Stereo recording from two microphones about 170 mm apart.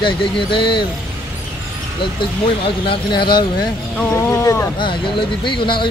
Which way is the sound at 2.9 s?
30° left (ahead or behind).